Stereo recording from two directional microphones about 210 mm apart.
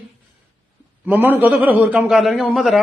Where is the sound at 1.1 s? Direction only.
10° right (ahead or behind).